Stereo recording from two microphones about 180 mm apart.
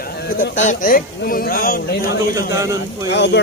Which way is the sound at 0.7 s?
50° left (ahead or behind).